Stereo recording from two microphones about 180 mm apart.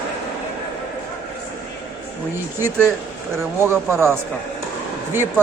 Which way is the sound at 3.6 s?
15° right (ahead or behind).